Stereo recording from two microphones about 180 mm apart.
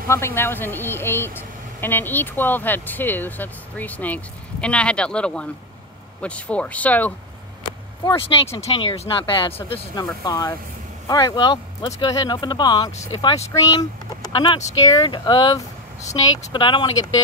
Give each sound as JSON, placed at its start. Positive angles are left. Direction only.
{"t": 0.1, "sound": "speech", "side_deg": 15}
{"t": 7.6, "sound": "a sound", "side_deg": 20}
{"t": 8.5, "sound": "speech", "side_deg": 35}